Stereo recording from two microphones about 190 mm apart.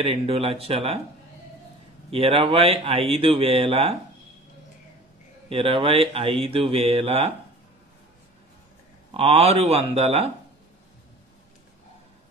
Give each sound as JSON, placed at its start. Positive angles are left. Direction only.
{"t": 0.0, "sound": "speech", "side_deg": -30}
{"t": 2.0, "sound": "speech", "side_deg": -30}
{"t": 5.5, "sound": "speech", "side_deg": -30}
{"t": 9.1, "sound": "speech", "side_deg": -30}